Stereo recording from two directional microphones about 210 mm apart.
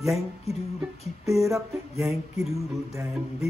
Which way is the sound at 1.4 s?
15° right (ahead or behind).